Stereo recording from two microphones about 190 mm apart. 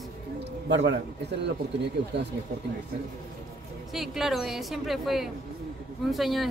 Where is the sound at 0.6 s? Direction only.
65° right (ahead or behind).